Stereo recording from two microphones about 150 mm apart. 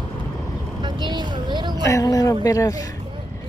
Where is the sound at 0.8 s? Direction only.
30° right (ahead or behind).